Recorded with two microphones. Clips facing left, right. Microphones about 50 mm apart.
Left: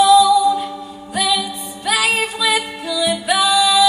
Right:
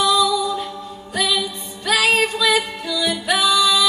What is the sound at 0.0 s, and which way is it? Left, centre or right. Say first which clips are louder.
Music: left 7 dB; centre.